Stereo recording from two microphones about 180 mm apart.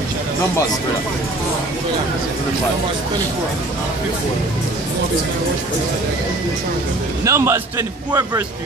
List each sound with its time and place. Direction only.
7.2 s a man's voice: 15° right (ahead or behind)